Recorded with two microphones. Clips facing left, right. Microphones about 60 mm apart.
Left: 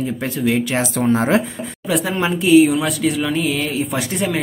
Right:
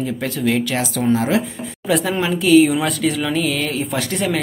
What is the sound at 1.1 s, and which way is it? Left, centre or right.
Speech, left.